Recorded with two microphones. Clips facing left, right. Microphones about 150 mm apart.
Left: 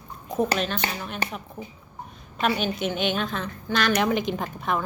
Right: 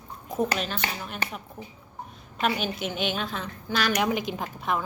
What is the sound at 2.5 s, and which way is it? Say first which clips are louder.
A woman's voice: left 3 dB; 5° right (ahead or behind).